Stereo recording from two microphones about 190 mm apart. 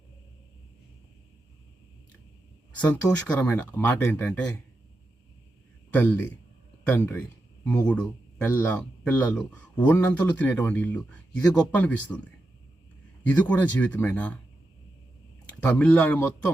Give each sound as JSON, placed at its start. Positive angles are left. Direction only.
{"t": 2.7, "sound": "speech", "side_deg": 5}
{"t": 5.9, "sound": "speech", "side_deg": 10}
{"t": 13.3, "sound": "speech", "side_deg": 5}
{"t": 15.6, "sound": "speech", "side_deg": 5}